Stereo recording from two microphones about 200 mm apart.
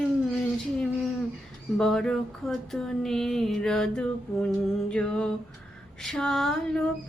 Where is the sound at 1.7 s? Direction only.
Centre (ahead or behind).